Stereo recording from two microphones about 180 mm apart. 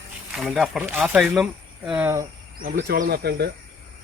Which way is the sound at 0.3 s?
Centre (ahead or behind).